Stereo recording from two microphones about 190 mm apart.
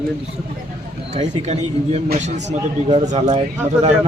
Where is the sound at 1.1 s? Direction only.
35° right (ahead or behind).